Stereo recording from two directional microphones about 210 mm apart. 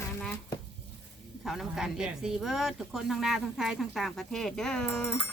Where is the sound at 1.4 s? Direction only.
Centre (ahead or behind).